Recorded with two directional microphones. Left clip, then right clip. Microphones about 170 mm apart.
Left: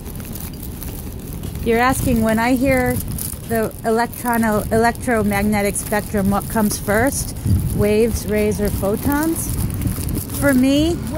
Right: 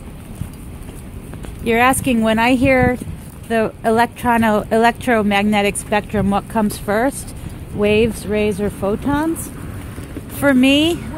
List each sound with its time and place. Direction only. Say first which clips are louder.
1.7 s speech: right 2 dB; 25° right (ahead or behind)
2.6 s speech: right 3 dB; 45° right (ahead or behind)
4.8 s speech: right 3 dB; 45° right (ahead or behind)
10.4 s speech: right 2 dB; 40° right (ahead or behind)
10.7 s speech: right 3 dB; 25° right (ahead or behind)